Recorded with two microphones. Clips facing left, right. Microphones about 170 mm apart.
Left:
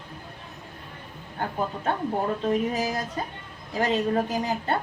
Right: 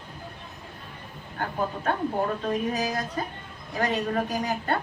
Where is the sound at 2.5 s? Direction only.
25° left (ahead or behind).